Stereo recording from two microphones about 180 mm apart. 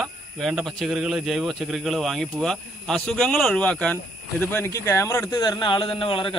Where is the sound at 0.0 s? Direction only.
Centre (ahead or behind).